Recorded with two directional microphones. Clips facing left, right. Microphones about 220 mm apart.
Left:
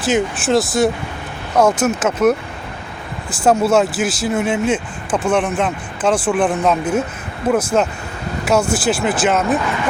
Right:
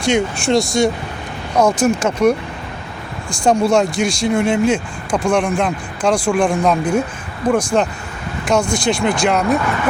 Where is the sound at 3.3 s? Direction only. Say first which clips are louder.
Even; 5° left (ahead or behind).